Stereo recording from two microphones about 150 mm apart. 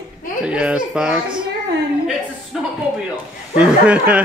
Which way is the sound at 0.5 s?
5° right (ahead or behind).